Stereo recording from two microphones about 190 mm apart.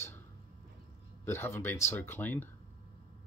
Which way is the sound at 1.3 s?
10° left (ahead or behind).